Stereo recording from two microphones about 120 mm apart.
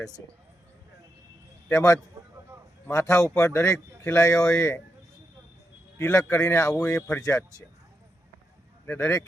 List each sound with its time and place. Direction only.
1.7 s speech: 25° left (ahead or behind)
6.0 s a man's voice: 25° left (ahead or behind)
8.9 s speech: 20° left (ahead or behind)